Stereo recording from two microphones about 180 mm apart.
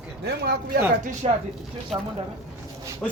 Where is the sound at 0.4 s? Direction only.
55° right (ahead or behind).